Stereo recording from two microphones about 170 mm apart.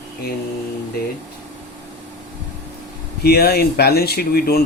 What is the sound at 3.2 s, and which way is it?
Speech, 70° left (ahead or behind).